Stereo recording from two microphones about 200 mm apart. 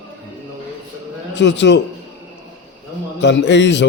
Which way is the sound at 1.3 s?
60° left (ahead or behind).